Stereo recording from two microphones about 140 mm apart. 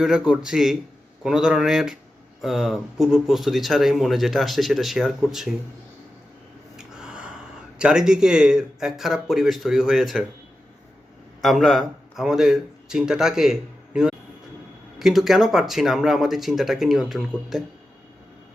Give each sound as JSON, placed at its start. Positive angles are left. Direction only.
{"t": 0.0, "sound": "speech", "side_deg": -5}
{"t": 6.7, "sound": "gasp", "side_deg": -5}
{"t": 7.8, "sound": "speech", "side_deg": -5}
{"t": 11.4, "sound": "speech", "side_deg": 0}